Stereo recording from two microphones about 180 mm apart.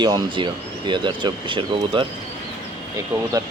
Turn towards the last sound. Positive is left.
turn(degrees=-20)  # may be behind; listen again after turning